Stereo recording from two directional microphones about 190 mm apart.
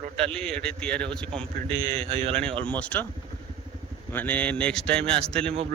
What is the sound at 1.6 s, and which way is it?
Speech, 30° right (ahead or behind).